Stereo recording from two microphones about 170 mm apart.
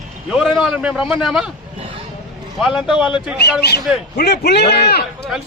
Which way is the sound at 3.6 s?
75° left (ahead or behind).